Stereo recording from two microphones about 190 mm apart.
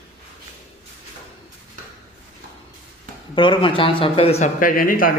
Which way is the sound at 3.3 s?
25° left (ahead or behind).